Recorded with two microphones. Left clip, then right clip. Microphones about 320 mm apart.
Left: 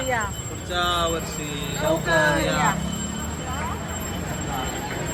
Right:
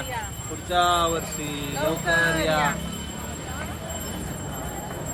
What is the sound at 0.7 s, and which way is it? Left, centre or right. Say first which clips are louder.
Speech: right 3 dB; centre.